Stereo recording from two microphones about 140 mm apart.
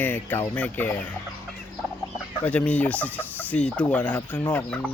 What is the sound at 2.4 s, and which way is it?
Speech, 10° left (ahead or behind).